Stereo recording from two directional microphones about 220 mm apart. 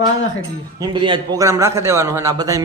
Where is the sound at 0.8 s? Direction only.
20° right (ahead or behind).